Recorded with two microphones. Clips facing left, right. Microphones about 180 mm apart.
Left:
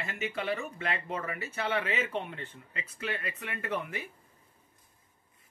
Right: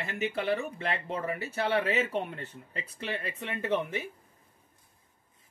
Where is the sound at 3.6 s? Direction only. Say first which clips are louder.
Right 5 dB; 25° right (ahead or behind).